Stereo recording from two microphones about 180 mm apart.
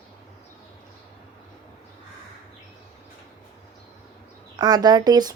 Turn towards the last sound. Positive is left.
turn(degrees=-20)  # may be behind; listen again after turning